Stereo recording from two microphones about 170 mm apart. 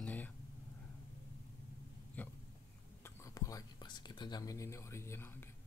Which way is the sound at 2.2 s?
10° left (ahead or behind).